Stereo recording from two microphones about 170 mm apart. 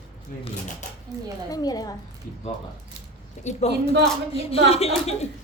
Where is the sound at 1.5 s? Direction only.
20° left (ahead or behind).